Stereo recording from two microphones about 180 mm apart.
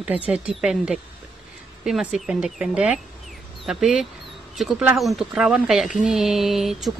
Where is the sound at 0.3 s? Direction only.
5° right (ahead or behind).